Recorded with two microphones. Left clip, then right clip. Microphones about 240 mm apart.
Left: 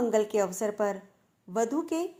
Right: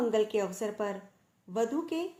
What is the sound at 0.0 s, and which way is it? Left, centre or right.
Speech, left.